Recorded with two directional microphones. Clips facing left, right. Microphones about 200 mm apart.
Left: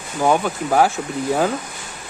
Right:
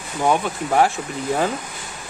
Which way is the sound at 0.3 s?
Centre (ahead or behind).